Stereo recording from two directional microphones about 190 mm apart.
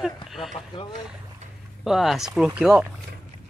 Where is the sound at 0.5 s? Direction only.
25° left (ahead or behind).